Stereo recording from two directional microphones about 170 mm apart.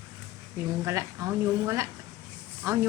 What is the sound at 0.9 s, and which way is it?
A woman's voice, 15° right (ahead or behind).